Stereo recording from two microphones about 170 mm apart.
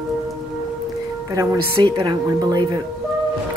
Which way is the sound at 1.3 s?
25° right (ahead or behind).